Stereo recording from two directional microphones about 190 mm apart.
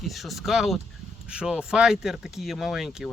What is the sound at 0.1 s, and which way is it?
Speech, centre (ahead or behind).